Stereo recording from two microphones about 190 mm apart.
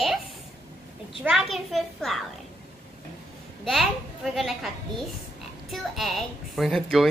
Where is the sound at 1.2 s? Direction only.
Centre (ahead or behind).